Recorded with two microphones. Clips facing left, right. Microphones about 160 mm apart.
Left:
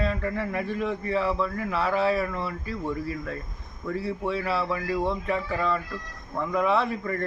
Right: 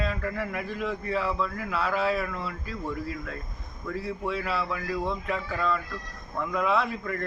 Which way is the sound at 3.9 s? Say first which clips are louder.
Left 3 dB; 30° left (ahead or behind).